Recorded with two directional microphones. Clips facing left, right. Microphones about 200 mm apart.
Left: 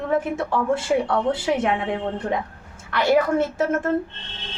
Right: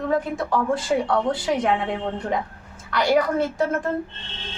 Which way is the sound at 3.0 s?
25° left (ahead or behind).